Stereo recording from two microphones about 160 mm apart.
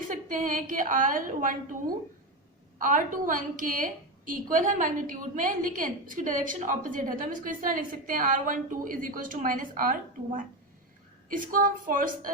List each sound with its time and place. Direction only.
0.1 s a woman's voice: 55° right (ahead or behind)
2.7 s a woman's voice: 55° right (ahead or behind)